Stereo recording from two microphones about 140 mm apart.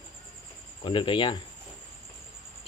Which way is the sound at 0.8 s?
35° left (ahead or behind).